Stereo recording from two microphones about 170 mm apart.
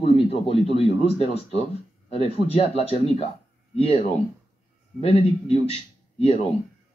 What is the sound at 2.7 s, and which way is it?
A man's voice, 35° left (ahead or behind).